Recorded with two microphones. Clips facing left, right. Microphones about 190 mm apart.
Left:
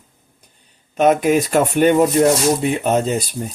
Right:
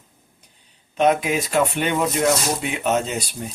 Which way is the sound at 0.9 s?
45° left (ahead or behind).